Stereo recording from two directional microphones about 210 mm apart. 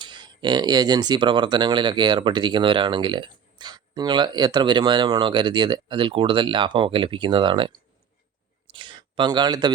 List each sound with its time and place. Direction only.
0.0 s speech: 20° right (ahead or behind)